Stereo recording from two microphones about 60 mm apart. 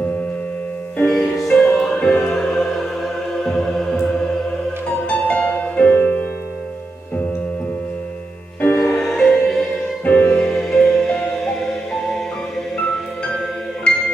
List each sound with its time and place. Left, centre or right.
1.0 s music: centre
5.0 s music: left
8.5 s music: centre
10.0 s music: left
10.4 s music: centre